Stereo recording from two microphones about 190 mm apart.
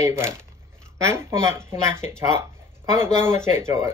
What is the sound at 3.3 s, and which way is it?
Speech, 15° right (ahead or behind).